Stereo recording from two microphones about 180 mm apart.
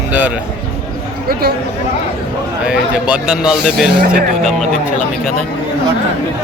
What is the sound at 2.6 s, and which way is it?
Speech, 5° right (ahead or behind).